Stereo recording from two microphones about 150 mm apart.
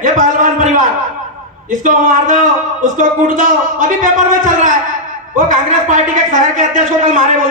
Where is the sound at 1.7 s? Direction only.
60° right (ahead or behind).